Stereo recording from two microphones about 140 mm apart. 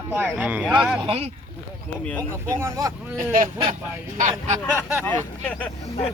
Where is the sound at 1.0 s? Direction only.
45° right (ahead or behind).